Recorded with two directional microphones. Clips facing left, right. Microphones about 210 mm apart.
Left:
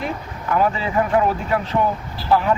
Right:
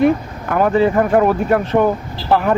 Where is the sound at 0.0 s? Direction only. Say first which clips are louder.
Right 12 dB; 50° right (ahead or behind).